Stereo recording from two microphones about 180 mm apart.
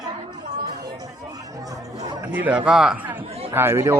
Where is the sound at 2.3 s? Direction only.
10° right (ahead or behind).